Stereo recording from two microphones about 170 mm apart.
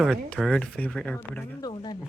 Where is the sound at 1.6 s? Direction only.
25° left (ahead or behind).